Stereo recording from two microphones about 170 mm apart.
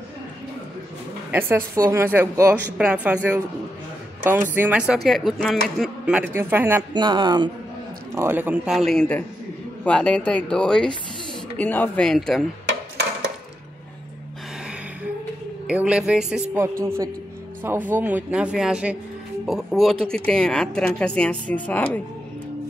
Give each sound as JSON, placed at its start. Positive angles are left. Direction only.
{"t": 1.3, "sound": "a woman's voice", "side_deg": -15}
{"t": 6.9, "sound": "speech", "side_deg": -25}
{"t": 8.1, "sound": "speech", "side_deg": -15}
{"t": 15.6, "sound": "a woman's voice", "side_deg": -5}
{"t": 17.6, "sound": "a woman's voice", "side_deg": -10}